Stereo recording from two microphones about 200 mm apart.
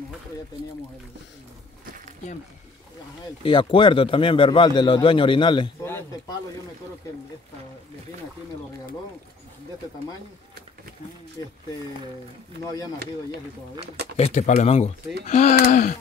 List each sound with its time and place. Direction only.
3.4 s speech: 25° left (ahead or behind)
5.9 s a sound: 10° left (ahead or behind)
14.1 s speech: 35° left (ahead or behind)